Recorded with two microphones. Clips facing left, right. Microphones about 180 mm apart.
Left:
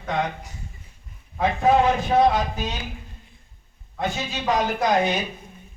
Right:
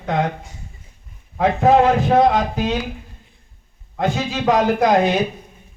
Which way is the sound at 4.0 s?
60° right (ahead or behind).